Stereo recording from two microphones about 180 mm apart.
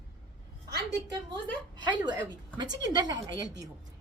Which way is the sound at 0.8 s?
20° right (ahead or behind).